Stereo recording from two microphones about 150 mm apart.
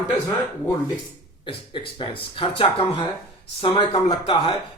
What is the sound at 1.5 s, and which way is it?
A man's voice, 35° left (ahead or behind).